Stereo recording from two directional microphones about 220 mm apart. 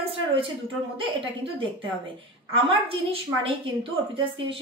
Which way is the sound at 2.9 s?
25° right (ahead or behind).